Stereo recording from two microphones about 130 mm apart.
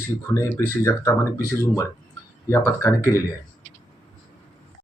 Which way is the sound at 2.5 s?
20° left (ahead or behind).